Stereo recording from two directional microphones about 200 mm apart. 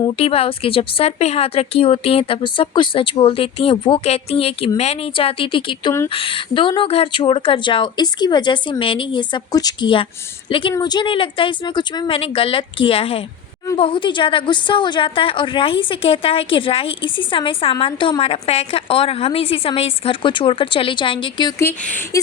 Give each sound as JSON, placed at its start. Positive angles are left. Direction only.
{"t": 0.0, "sound": "a woman's voice", "side_deg": 30}